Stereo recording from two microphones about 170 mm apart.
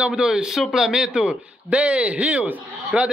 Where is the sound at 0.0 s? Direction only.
5° right (ahead or behind).